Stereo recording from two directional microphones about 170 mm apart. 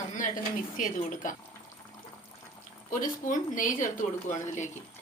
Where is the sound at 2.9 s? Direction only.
50° left (ahead or behind).